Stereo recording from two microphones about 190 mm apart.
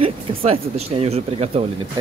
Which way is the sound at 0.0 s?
30° right (ahead or behind).